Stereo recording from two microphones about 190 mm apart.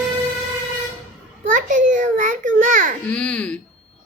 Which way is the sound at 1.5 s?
45° right (ahead or behind).